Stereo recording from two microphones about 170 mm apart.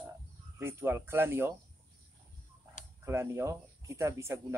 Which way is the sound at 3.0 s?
15° right (ahead or behind).